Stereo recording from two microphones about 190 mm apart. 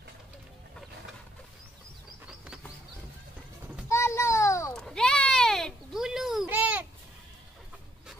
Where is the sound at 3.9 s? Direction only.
15° left (ahead or behind).